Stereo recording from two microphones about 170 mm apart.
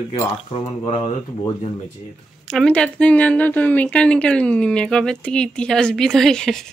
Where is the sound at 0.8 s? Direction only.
40° left (ahead or behind).